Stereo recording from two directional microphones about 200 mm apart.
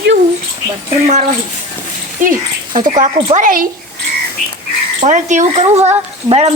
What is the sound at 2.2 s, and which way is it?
Speech, 40° right (ahead or behind).